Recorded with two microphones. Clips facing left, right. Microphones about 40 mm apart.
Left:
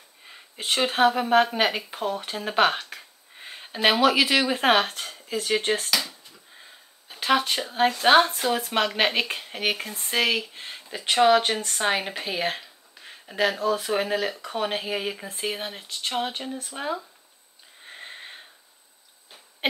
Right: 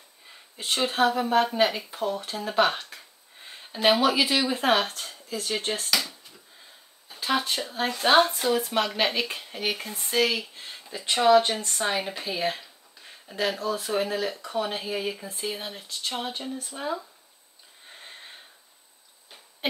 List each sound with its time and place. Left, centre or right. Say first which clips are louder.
0.3 s speech: left 2 dB; left
4.0 s speech: left 3 dB; left
7.2 s speech: left 4 dB; left
8.6 s speech: left 2 dB; left
17.8 s sniff: left 5 dB; left